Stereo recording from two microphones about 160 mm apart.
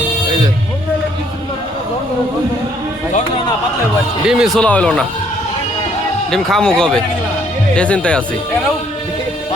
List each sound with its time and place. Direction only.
4.3 s speech: centre (ahead or behind)
6.3 s speech: 5° left (ahead or behind)